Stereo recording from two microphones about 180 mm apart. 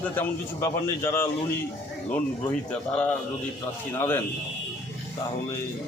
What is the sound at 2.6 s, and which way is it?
A man's voice, 5° left (ahead or behind).